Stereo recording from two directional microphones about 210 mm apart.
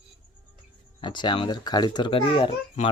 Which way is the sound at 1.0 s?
20° left (ahead or behind).